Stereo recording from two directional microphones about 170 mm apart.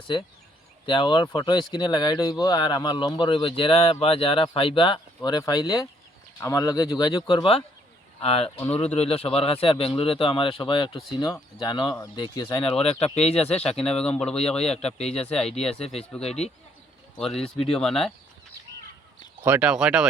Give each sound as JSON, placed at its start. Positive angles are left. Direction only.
{"t": 0.9, "sound": "speech", "side_deg": 30}
{"t": 13.6, "sound": "speech", "side_deg": 5}
{"t": 14.5, "sound": "speech", "side_deg": 40}
{"t": 17.2, "sound": "speech", "side_deg": 0}
{"t": 19.4, "sound": "speech", "side_deg": -10}